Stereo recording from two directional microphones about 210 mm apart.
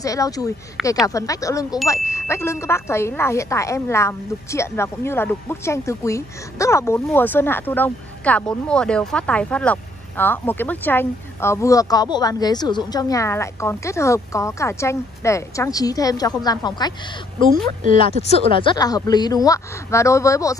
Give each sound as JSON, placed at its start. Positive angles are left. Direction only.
{"t": 0.0, "sound": "a woman's voice", "side_deg": 15}
{"t": 17.9, "sound": "speech", "side_deg": 25}